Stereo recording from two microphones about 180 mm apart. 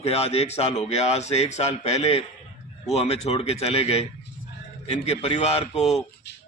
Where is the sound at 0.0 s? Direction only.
35° left (ahead or behind).